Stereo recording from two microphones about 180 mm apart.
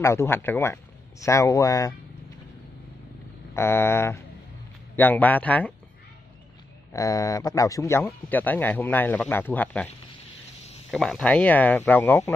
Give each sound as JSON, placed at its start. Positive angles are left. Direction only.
{"t": 0.0, "sound": "a man's voice", "side_deg": 15}
{"t": 3.5, "sound": "a man's voice", "side_deg": 15}
{"t": 6.9, "sound": "a man's voice", "side_deg": 20}
{"t": 10.9, "sound": "a man's voice", "side_deg": 0}